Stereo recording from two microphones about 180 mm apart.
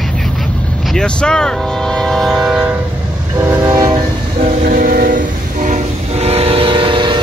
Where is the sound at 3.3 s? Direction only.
15° right (ahead or behind).